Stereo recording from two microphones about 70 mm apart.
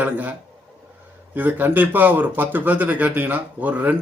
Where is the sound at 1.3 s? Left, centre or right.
Right.